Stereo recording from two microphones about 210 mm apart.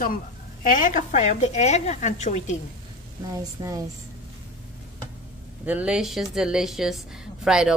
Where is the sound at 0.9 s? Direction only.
35° left (ahead or behind).